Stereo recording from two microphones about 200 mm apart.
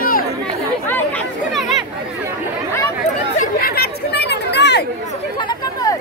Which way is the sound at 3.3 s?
45° left (ahead or behind).